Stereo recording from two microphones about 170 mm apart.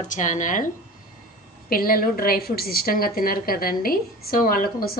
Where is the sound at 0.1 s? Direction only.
50° left (ahead or behind).